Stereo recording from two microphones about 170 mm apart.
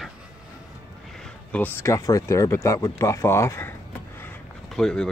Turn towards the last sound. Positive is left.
turn(degrees=5)  # may be behind; listen again after turning